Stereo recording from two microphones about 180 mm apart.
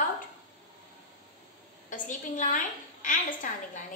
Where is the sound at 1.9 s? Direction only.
45° left (ahead or behind).